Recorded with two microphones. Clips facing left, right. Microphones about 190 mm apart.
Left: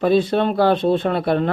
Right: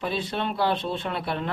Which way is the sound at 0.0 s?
45° left (ahead or behind).